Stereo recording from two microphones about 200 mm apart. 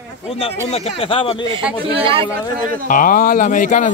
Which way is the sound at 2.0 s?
25° right (ahead or behind).